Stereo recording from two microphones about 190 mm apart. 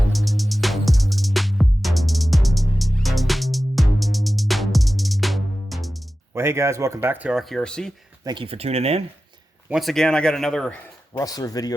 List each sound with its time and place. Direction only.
0.1 s music: centre (ahead or behind)
6.3 s speech: 15° right (ahead or behind); by 7.9 s 5° left (ahead or behind)
8.2 s speech: 25° right (ahead or behind)
9.6 s speech: centre (ahead or behind)
11.2 s speech: 20° left (ahead or behind)